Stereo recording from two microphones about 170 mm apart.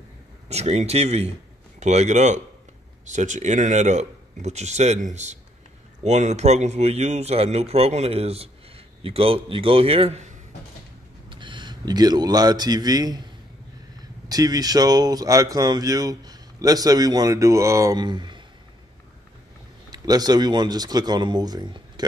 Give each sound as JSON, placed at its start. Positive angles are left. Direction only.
{"t": 0.5, "sound": "a man's voice", "side_deg": -40}
{"t": 19.9, "sound": "speech", "side_deg": -25}